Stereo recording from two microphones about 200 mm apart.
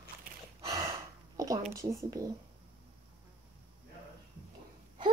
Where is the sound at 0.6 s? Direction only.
15° right (ahead or behind).